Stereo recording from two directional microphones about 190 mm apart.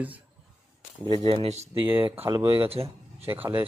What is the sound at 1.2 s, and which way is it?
Speech, 30° right (ahead or behind).